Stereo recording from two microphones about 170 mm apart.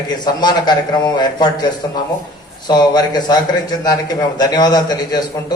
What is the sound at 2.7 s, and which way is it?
Speech, 25° left (ahead or behind).